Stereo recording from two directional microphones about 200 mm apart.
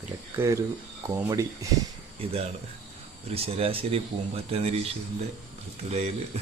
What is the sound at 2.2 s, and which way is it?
Speech, 30° right (ahead or behind).